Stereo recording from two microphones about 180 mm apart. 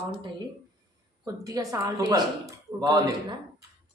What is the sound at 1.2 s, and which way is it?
Speech, 20° right (ahead or behind).